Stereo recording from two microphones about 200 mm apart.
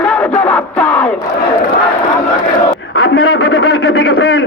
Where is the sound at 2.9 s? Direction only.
90° left; by 4.4 s 55° left (ahead or behind).